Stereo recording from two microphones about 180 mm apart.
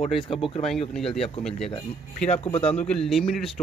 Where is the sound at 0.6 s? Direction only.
Centre (ahead or behind).